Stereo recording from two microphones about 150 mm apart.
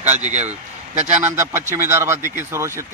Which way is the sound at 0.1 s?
50° right (ahead or behind).